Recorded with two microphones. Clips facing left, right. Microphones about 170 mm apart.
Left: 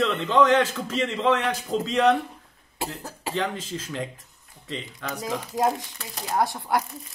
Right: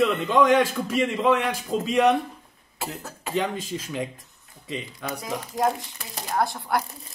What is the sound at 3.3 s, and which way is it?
A man's voice, 15° right (ahead or behind).